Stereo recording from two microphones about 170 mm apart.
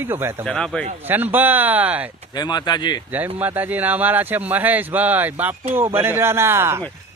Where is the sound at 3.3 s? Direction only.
10° right (ahead or behind).